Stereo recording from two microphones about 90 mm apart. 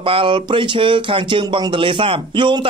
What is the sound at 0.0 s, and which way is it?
Speech, 85° right.